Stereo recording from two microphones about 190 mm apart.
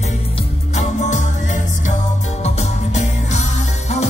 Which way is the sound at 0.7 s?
35° left (ahead or behind).